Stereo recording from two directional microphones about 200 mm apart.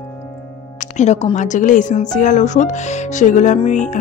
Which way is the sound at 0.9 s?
35° left (ahead or behind).